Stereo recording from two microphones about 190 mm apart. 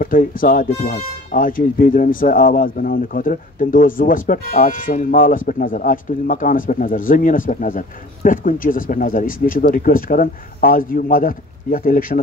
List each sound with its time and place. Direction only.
0.0 s speech: 45° left (ahead or behind)